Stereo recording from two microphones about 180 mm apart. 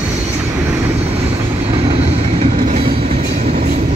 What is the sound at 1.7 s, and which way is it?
Train, 35° right (ahead or behind).